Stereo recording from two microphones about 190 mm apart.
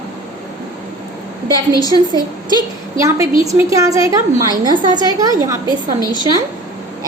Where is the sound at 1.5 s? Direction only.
20° left (ahead or behind).